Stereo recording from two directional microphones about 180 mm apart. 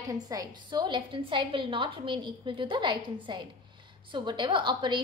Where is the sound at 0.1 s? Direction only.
20° right (ahead or behind).